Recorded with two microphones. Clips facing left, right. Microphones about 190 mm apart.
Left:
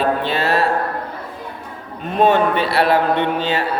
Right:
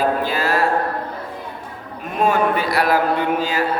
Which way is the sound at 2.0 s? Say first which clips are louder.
Left 3 dB; 30° left (ahead or behind).